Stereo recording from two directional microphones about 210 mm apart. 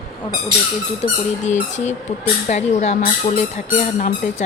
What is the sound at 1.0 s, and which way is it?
Speech, 30° left (ahead or behind).